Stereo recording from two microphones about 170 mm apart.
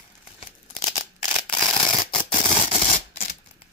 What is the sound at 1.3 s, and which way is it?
Mechanisms, 30° left (ahead or behind).